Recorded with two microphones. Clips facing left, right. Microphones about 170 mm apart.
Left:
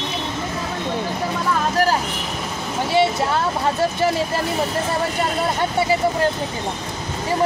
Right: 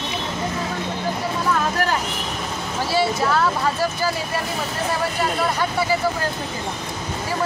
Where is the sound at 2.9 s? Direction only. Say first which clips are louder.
Left 1 dB; 25° left (ahead or behind).